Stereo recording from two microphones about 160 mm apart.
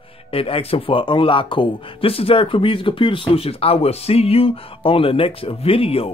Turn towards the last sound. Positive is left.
turn(degrees=35)  # may be behind; listen again after turning